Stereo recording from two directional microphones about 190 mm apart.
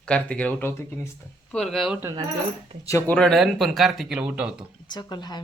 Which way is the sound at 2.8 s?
15° left (ahead or behind).